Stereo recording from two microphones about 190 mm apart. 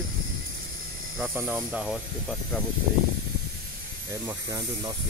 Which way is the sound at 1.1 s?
10° right (ahead or behind).